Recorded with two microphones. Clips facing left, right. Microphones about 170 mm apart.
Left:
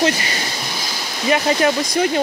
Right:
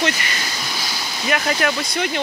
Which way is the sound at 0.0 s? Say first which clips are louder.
Left 4 dB; 30° left (ahead or behind).